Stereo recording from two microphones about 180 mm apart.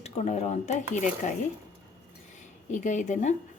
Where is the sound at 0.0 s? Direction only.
40° left (ahead or behind).